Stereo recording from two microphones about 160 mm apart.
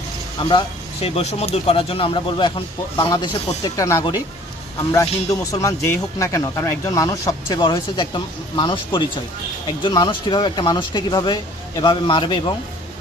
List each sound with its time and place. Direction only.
0.4 s speech: 30° left (ahead or behind)